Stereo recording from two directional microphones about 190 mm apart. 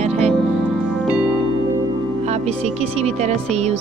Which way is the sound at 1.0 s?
5° right (ahead or behind).